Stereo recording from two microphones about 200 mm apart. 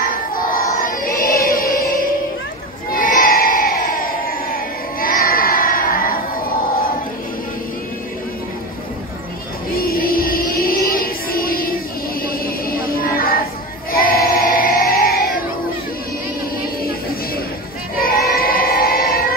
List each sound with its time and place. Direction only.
0.0 s music: 45° left (ahead or behind)
2.9 s crowd: 45° left (ahead or behind)
9.8 s music: 45° left (ahead or behind)
12.3 s a sound: 45° left (ahead or behind)
13.9 s crowd: 45° left (ahead or behind)
17.9 s choir: 45° left (ahead or behind)